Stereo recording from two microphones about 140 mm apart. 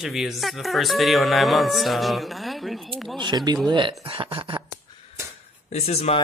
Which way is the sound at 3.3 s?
30° right (ahead or behind).